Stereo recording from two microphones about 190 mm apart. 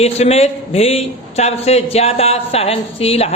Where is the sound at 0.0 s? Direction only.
35° left (ahead or behind).